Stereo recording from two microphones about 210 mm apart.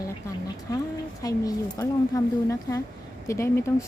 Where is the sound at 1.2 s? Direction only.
15° left (ahead or behind).